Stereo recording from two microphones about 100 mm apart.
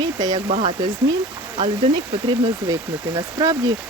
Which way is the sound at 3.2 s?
45° right (ahead or behind).